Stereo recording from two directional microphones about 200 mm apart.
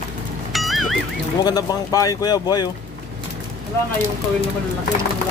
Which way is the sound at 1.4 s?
20° left (ahead or behind).